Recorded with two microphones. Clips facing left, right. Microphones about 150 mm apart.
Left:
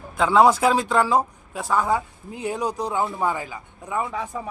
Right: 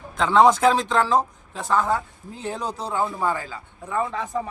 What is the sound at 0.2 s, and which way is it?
Speech, 5° left (ahead or behind).